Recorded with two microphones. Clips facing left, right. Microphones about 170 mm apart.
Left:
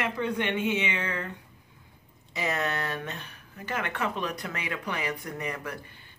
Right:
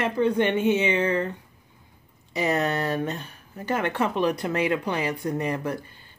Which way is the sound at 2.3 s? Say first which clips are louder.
Right 6 dB; 30° right (ahead or behind).